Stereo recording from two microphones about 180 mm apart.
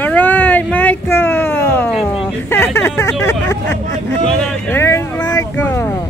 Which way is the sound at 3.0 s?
15° left (ahead or behind).